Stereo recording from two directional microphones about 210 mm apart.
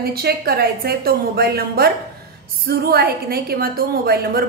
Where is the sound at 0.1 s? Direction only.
45° right (ahead or behind).